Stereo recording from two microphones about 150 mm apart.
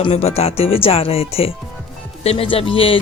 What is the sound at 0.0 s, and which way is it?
Speech, 45° left (ahead or behind).